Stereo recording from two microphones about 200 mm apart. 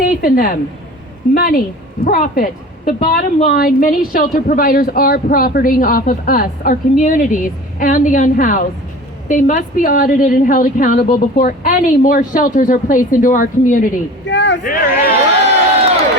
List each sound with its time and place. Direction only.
0.0 s a woman's voice: 45° left (ahead or behind)
14.3 s a sound: 60° left (ahead or behind)
14.6 s speech: 45° left (ahead or behind)